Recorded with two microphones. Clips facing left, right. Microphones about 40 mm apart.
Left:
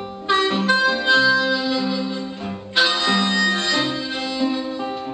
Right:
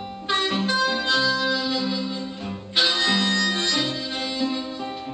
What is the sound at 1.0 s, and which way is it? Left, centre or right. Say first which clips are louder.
Music: left 6 dB; centre.